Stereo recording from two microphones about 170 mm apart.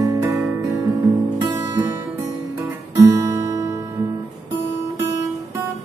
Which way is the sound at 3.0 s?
15° right (ahead or behind).